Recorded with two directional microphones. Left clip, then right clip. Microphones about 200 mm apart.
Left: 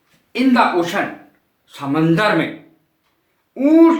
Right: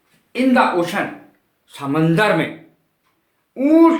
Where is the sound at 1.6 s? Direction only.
20° right (ahead or behind).